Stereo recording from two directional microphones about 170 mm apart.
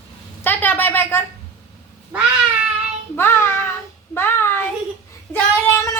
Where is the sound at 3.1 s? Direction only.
15° left (ahead or behind).